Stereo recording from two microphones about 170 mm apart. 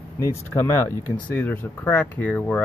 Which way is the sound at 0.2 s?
15° left (ahead or behind).